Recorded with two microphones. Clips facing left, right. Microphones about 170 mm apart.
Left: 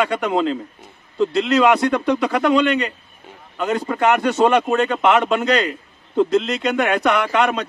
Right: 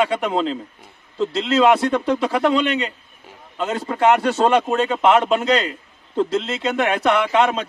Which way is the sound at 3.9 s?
30° right (ahead or behind).